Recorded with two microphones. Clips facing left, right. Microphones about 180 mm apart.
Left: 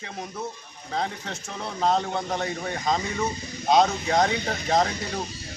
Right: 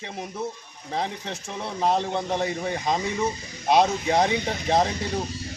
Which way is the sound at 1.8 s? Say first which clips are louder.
Even; 10° right (ahead or behind).